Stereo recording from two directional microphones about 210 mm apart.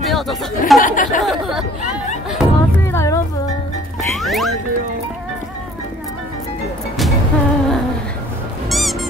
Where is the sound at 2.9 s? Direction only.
15° left (ahead or behind).